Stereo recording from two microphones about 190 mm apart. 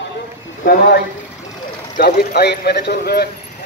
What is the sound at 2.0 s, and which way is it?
Speech, 55° left (ahead or behind).